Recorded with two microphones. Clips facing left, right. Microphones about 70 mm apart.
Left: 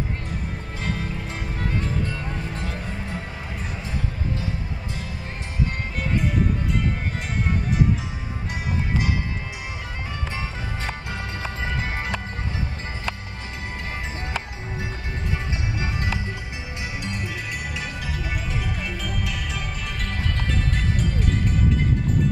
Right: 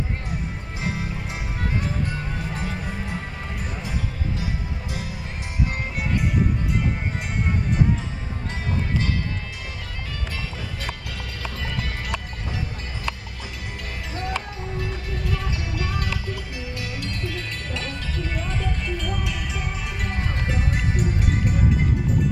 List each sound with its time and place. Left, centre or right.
0.8 s music: centre
11.4 s music: left
15.8 s music: left; by 21.8 s centre